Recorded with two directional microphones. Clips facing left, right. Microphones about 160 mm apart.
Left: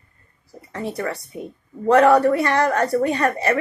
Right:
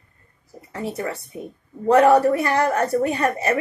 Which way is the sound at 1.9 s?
10° right (ahead or behind).